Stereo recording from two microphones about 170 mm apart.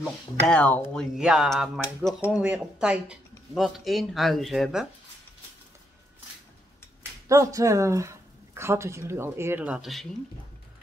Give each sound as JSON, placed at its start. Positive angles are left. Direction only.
{"t": 0.4, "sound": "speech", "side_deg": 10}
{"t": 1.1, "sound": "speech", "side_deg": -5}
{"t": 7.2, "sound": "a woman's voice", "side_deg": -20}